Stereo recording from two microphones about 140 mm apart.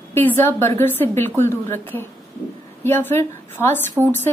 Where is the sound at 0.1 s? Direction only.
15° left (ahead or behind).